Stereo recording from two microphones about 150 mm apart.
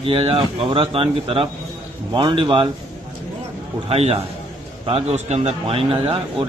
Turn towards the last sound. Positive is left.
turn(degrees=-40)  # may be behind; listen again after turning